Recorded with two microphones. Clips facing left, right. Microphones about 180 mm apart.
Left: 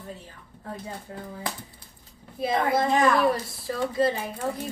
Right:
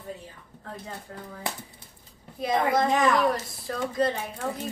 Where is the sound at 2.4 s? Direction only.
5° left (ahead or behind).